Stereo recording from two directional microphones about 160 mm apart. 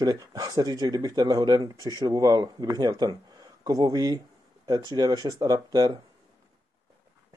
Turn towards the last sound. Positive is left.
turn(degrees=-25)  # may be behind; listen again after turning